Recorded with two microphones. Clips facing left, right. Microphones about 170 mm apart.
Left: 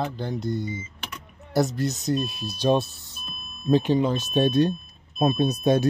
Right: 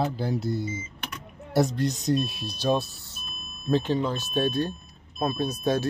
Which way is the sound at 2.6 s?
20° left (ahead or behind).